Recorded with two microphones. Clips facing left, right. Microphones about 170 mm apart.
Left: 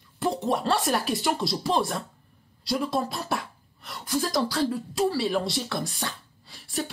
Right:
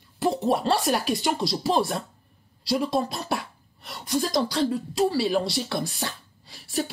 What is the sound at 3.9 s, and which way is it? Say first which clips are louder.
Speech: right 2 dB; 25° right (ahead or behind).